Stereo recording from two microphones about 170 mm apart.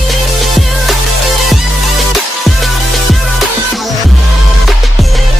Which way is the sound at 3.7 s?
Centre (ahead or behind).